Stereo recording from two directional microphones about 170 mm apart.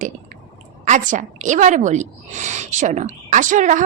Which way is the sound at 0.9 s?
45° right (ahead or behind).